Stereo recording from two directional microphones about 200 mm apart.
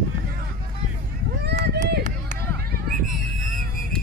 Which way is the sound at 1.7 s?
55° right (ahead or behind).